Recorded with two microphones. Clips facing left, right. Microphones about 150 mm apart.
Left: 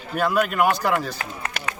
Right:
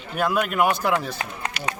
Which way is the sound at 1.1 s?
20° right (ahead or behind).